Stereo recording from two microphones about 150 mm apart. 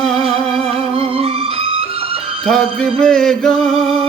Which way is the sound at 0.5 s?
40° right (ahead or behind).